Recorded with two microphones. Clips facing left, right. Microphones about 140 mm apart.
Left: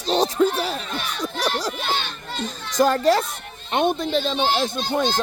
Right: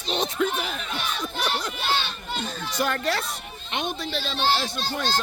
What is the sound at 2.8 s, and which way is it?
Speech, 40° left (ahead or behind).